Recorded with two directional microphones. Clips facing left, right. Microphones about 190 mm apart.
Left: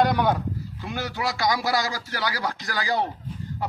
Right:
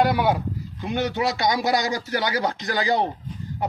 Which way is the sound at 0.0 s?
10° right (ahead or behind).